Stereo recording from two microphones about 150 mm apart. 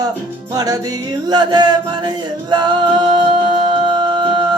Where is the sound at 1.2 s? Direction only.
30° right (ahead or behind).